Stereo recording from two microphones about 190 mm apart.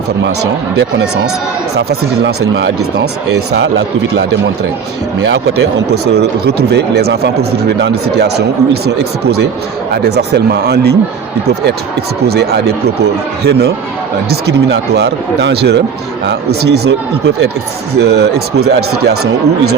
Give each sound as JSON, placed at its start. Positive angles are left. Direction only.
{"t": 0.8, "sound": "speech", "side_deg": -70}
{"t": 6.1, "sound": "speech", "side_deg": -60}
{"t": 12.3, "sound": "speech", "side_deg": -60}